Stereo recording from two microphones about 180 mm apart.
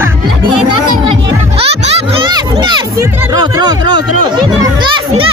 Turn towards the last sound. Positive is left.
turn(degrees=-25)  # may be behind; listen again after turning